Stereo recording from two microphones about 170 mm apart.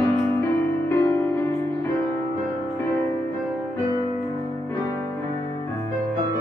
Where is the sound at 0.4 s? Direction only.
15° left (ahead or behind).